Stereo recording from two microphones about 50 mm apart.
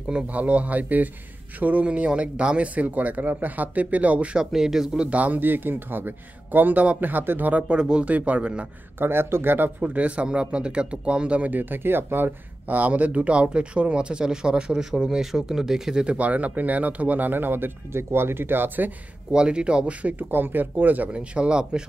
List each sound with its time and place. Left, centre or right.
0.3 s speech: right
4.5 s a man's voice: centre
5.0 s speech: right
7.7 s a man's voice: centre
9.0 s speech: right
9.8 s speech: right
11.5 s speech: right
12.6 s speech: right; by 16.0 s centre
16.0 s speech: right
19.3 s speech: centre
20.2 s speech: right
21.1 s speech: centre